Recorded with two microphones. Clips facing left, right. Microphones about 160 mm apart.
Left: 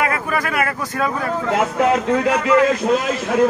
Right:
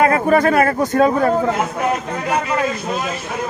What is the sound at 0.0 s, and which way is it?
Speech, 35° right (ahead or behind).